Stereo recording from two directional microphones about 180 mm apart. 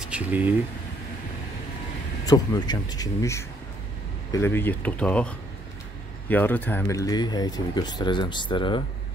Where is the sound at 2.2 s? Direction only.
20° left (ahead or behind).